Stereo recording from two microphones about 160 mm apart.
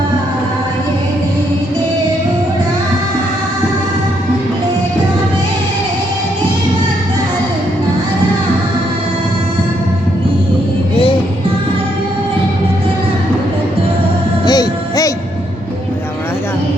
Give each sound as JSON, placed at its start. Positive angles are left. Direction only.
{"t": 14.4, "sound": "music", "side_deg": 25}